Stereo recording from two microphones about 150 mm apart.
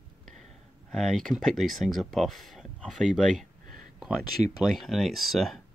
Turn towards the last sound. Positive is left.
turn(degrees=0)  # may be behind; listen again after turning